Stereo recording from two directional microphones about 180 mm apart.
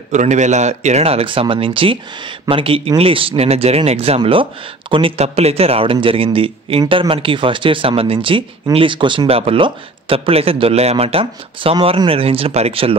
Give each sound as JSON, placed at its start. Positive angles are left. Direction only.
{"t": 0.1, "sound": "a man's voice", "side_deg": -40}